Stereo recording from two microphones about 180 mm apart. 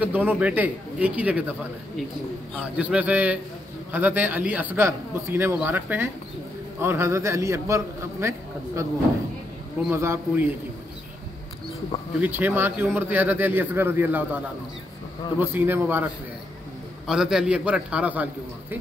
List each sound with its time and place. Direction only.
0.0 s a man's voice: 10° right (ahead or behind)
12.2 s a man's voice: 10° right (ahead or behind)
17.1 s a man's voice: 5° right (ahead or behind)